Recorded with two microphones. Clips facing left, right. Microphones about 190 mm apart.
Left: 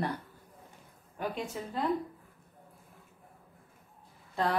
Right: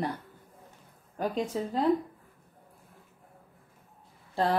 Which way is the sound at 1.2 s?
35° right (ahead or behind).